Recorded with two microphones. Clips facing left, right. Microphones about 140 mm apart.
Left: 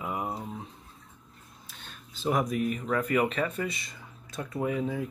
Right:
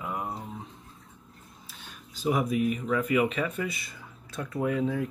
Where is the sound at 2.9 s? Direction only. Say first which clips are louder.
Right 1 dB; 45° left (ahead or behind).